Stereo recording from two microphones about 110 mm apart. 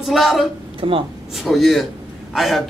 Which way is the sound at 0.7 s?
55° right (ahead or behind).